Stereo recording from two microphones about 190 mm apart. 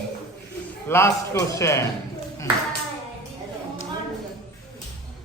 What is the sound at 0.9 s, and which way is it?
Speech, 15° left (ahead or behind).